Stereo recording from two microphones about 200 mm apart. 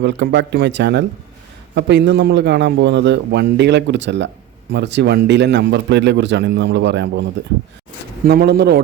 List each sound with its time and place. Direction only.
0.0 s a man's voice: 60° right (ahead or behind)
8.2 s a man's voice: 50° right (ahead or behind)